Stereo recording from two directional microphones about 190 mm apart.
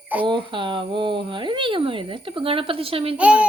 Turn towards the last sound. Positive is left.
turn(degrees=-5)  # may be behind; listen again after turning